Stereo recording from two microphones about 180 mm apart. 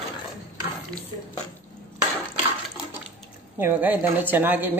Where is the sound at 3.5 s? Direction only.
10° right (ahead or behind).